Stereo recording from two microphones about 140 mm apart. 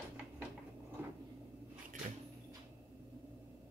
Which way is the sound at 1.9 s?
65° right (ahead or behind).